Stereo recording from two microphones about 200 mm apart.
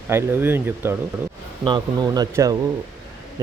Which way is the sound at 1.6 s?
20° right (ahead or behind).